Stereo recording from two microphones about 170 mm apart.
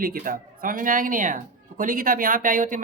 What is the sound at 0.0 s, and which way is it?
A man's voice, 55° right (ahead or behind).